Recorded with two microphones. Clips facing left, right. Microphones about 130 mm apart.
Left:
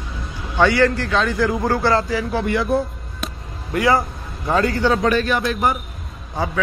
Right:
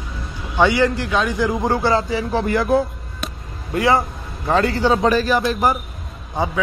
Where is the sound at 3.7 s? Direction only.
25° right (ahead or behind).